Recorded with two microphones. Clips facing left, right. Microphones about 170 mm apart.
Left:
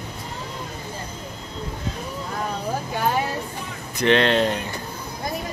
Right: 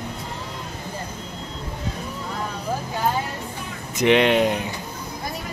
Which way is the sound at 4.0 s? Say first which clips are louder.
Right 2 dB; 15° right (ahead or behind).